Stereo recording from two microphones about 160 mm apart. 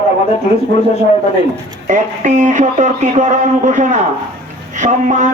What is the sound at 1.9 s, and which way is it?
Speech, 50° right (ahead or behind).